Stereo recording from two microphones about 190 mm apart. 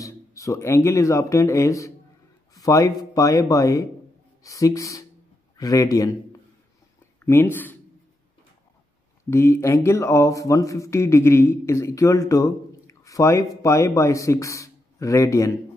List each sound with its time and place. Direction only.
0.0 s speech: 15° left (ahead or behind)
2.5 s a sound: 20° left (ahead or behind)
3.0 s a man's voice: 15° left (ahead or behind)
7.2 s speech: 10° left (ahead or behind)
9.3 s speech: 15° left (ahead or behind)